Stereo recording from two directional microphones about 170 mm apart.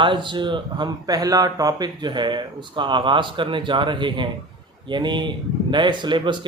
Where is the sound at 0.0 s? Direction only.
30° right (ahead or behind).